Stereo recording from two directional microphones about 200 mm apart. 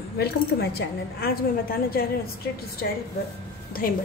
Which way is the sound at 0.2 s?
55° left (ahead or behind).